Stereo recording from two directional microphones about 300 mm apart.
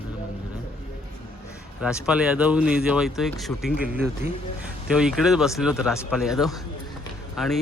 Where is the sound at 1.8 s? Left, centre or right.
Centre.